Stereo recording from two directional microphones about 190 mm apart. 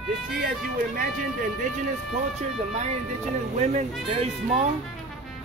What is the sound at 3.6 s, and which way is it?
Speech, 35° right (ahead or behind).